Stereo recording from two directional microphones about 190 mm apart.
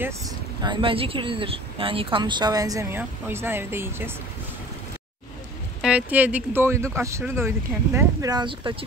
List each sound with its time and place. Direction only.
0.6 s speech: 25° right (ahead or behind)
5.8 s speech: 5° right (ahead or behind); by 8.7 s 25° right (ahead or behind)